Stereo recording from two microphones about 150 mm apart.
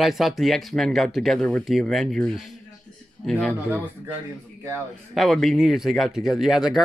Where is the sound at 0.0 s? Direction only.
Centre (ahead or behind).